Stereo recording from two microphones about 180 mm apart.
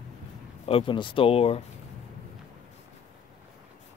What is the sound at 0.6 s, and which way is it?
Speech, 30° left (ahead or behind).